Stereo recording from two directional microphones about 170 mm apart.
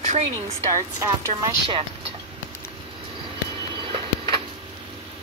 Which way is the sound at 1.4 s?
30° right (ahead or behind).